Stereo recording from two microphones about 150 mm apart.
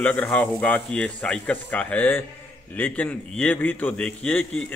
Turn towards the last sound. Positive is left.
turn(degrees=10)  # may be behind; listen again after turning